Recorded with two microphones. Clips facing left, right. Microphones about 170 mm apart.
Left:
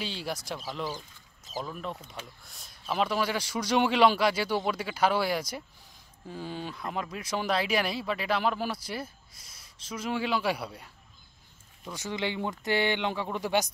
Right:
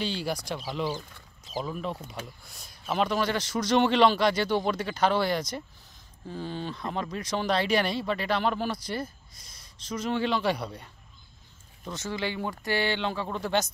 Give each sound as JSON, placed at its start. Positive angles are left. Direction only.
{"t": 0.0, "sound": "a man's voice", "side_deg": 0}
{"t": 11.9, "sound": "a man's voice", "side_deg": 15}